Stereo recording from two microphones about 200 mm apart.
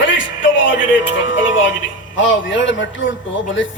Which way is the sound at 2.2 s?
65° left (ahead or behind).